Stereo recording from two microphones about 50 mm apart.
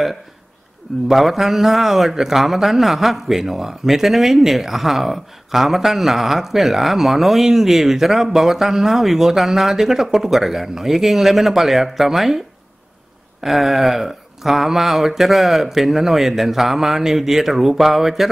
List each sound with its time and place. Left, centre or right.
1.0 s a man's voice: centre
13.4 s a man's voice: centre